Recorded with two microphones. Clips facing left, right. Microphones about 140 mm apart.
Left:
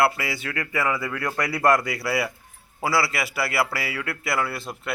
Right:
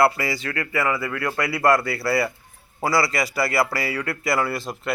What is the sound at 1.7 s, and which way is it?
A man's voice, 15° left (ahead or behind).